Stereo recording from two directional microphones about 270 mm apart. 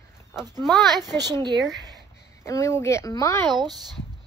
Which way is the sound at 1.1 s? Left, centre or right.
Centre.